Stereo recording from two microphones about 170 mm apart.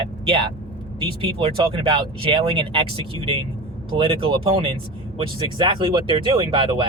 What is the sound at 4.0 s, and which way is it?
Speech, 30° right (ahead or behind).